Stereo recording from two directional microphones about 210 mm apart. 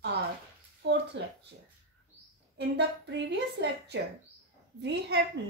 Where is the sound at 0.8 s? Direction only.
55° right (ahead or behind).